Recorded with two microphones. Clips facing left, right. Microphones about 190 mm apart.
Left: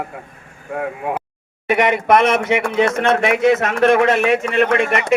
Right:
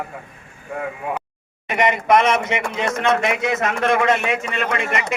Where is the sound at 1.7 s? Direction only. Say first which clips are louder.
Left 3 dB; 60° left (ahead or behind).